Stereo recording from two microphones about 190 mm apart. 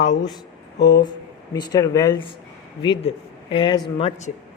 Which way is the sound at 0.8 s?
60° left (ahead or behind).